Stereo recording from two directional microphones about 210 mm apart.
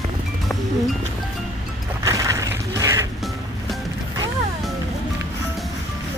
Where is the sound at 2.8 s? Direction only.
15° right (ahead or behind).